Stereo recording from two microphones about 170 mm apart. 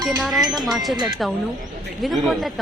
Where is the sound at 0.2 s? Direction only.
Centre (ahead or behind).